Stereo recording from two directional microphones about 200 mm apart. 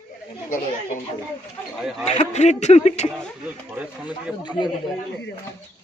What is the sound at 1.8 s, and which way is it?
Speech, centre (ahead or behind).